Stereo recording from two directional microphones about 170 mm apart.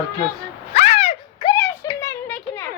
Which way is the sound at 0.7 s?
45° left (ahead or behind).